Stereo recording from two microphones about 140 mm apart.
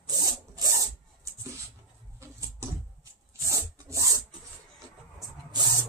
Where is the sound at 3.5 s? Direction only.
20° right (ahead or behind).